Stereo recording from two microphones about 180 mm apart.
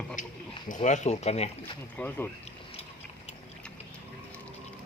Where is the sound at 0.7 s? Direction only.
45° left (ahead or behind).